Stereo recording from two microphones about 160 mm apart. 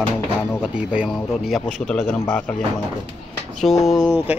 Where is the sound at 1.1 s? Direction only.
5° left (ahead or behind).